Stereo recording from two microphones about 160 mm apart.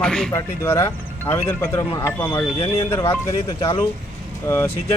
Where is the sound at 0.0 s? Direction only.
5° left (ahead or behind).